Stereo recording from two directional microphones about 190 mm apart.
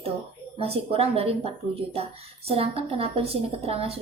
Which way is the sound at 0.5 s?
30° right (ahead or behind).